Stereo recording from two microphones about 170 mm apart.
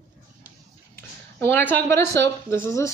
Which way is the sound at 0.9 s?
15° left (ahead or behind).